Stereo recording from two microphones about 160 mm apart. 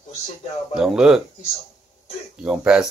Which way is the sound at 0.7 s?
5° right (ahead or behind).